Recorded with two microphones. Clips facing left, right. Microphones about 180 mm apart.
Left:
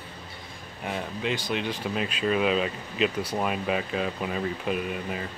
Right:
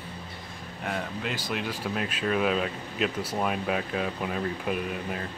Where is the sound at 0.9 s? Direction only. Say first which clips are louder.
Left 2 dB; centre (ahead or behind).